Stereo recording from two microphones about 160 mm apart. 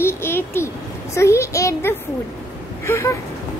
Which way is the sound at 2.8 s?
15° left (ahead or behind).